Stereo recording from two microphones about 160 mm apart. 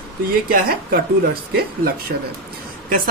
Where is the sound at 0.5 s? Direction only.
65° right (ahead or behind).